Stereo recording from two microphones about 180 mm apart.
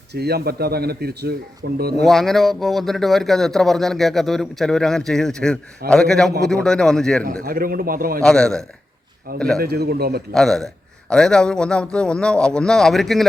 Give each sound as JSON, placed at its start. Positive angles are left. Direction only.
{"t": 0.1, "sound": "speech", "side_deg": -60}
{"t": 2.0, "sound": "speech", "side_deg": 0}
{"t": 7.4, "sound": "a man's voice", "side_deg": -55}
{"t": 8.2, "sound": "speech", "side_deg": 5}
{"t": 9.6, "sound": "speech", "side_deg": -60}
{"t": 10.3, "sound": "speech", "side_deg": 0}